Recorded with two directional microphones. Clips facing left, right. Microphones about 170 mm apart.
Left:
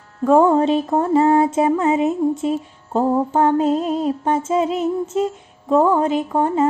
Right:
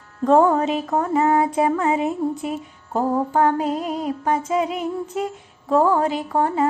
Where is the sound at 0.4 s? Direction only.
30° left (ahead or behind).